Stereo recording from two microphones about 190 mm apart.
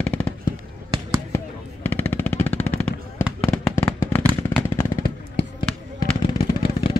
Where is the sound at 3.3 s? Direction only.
10° left (ahead or behind).